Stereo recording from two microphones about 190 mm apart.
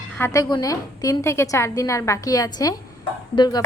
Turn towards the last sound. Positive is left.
turn(degrees=20)  # may be behind; listen again after turning